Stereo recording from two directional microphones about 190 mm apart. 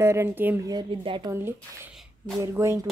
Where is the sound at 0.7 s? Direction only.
25° right (ahead or behind).